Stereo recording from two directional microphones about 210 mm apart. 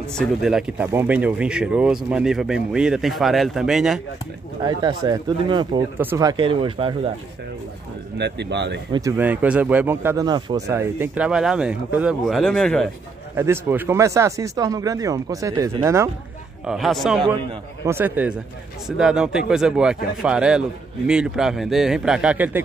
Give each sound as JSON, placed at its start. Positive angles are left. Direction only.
{"t": 0.1, "sound": "a man's voice", "side_deg": 0}
{"t": 4.6, "sound": "speech", "side_deg": -20}
{"t": 8.2, "sound": "speech", "side_deg": -55}
{"t": 8.9, "sound": "speech", "side_deg": -10}
{"t": 13.4, "sound": "speech", "side_deg": -10}
{"t": 16.6, "sound": "a man's voice", "side_deg": 0}